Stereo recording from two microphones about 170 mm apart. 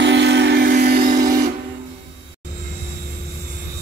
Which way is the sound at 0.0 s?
90° right.